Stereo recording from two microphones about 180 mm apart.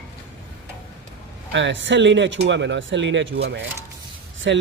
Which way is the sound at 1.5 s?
90° right.